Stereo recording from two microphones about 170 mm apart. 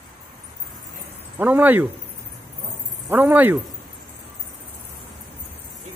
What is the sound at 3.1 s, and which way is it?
Speech, 10° right (ahead or behind).